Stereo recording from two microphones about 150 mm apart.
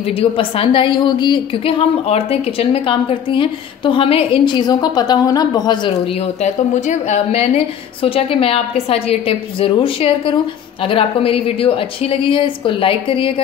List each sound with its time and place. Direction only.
0.0 s a woman's voice: 40° left (ahead or behind)